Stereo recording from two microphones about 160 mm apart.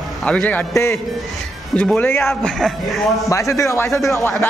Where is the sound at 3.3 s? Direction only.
20° left (ahead or behind).